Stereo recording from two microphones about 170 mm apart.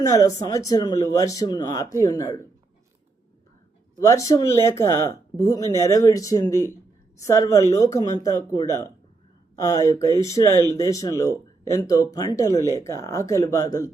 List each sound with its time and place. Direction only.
0.1 s speech: 20° left (ahead or behind)
4.0 s speech: 20° left (ahead or behind)